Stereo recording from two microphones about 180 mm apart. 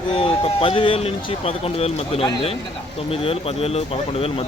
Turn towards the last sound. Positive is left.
turn(degrees=35)  # may be behind; listen again after turning